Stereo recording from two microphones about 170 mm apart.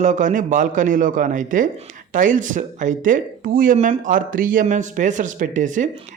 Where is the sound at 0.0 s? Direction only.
45° right (ahead or behind).